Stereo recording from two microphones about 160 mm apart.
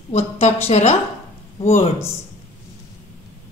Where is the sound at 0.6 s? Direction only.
45° left (ahead or behind).